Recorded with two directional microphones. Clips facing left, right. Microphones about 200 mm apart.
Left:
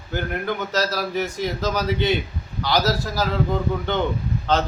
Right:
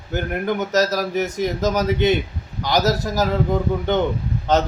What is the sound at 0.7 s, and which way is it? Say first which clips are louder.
Speech: right 4 dB; 40° right (ahead or behind).